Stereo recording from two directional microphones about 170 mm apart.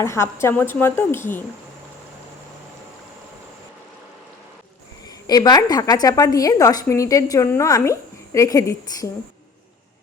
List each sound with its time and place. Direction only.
0.0 s a woman's voice: 15° left (ahead or behind)
5.2 s a woman's voice: 25° left (ahead or behind)